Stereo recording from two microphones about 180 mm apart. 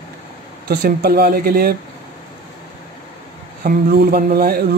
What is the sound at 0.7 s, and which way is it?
Speech, 60° right (ahead or behind).